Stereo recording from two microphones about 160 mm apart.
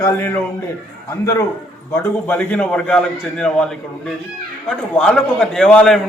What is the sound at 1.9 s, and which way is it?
A man's voice, 10° left (ahead or behind).